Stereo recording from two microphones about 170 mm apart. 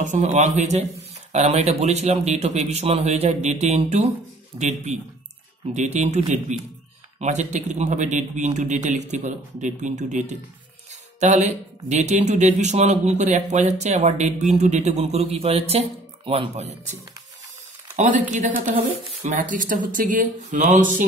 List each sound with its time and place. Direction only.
0.0 s speech: 45° right (ahead or behind)
18.3 s speech: 50° right (ahead or behind)